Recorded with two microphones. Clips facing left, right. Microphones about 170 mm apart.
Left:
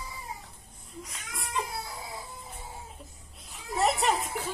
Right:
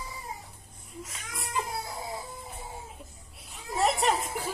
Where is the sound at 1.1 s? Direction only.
Centre (ahead or behind).